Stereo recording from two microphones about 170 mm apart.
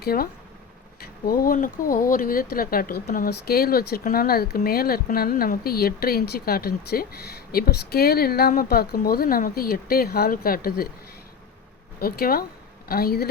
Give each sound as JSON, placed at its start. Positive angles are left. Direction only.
{"t": 0.0, "sound": "speech", "side_deg": 60}
{"t": 11.9, "sound": "speech", "side_deg": 60}